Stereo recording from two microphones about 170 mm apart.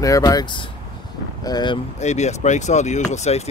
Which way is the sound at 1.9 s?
45° left (ahead or behind).